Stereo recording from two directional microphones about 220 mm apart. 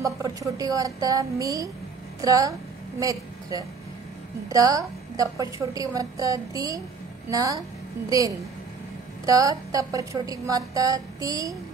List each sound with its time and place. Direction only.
0.0 s a woman's voice: 15° right (ahead or behind)
9.2 s a woman's voice: 15° right (ahead or behind)